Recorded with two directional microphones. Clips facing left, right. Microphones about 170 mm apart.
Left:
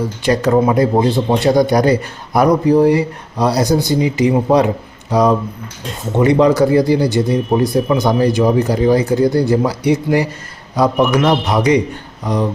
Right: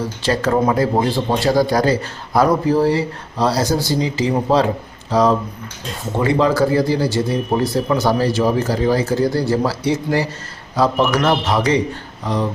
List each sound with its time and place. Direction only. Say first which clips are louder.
0.5 s speech: left 3 dB; 5° left (ahead or behind)
0.8 s speech: left 4 dB; 20° left (ahead or behind)